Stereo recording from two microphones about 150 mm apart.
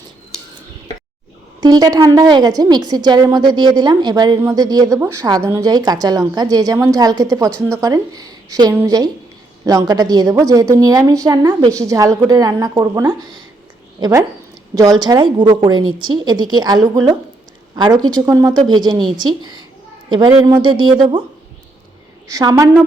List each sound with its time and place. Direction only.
1.6 s a woman's voice: 25° right (ahead or behind)
22.3 s a woman's voice: 25° right (ahead or behind)